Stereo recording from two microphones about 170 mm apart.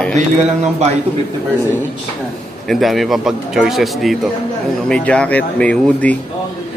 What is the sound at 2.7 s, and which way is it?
Speech, centre (ahead or behind).